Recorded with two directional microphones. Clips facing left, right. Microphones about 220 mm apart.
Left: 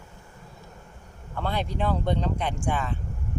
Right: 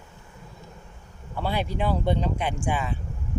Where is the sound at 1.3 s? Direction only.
10° right (ahead or behind).